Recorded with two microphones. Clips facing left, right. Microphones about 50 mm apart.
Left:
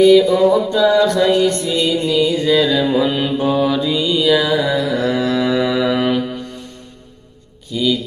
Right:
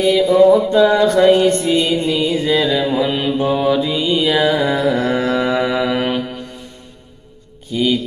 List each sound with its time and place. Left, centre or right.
0.0 s mantra: centre
7.7 s speech: right